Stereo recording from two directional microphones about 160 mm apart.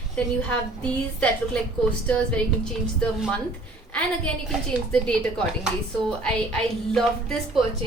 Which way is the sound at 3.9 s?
5° left (ahead or behind).